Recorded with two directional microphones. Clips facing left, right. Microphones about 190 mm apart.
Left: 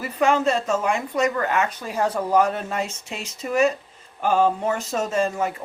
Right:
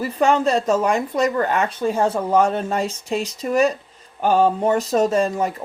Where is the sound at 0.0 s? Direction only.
35° right (ahead or behind).